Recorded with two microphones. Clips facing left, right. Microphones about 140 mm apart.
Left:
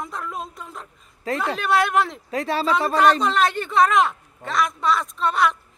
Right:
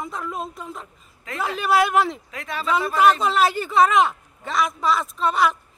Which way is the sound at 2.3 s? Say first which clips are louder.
Left 7 dB; 35° left (ahead or behind).